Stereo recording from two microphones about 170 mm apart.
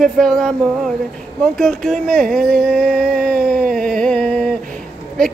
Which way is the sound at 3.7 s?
5° left (ahead or behind).